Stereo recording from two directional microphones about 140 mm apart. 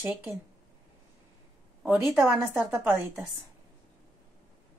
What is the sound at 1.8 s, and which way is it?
A woman's voice, 5° right (ahead or behind).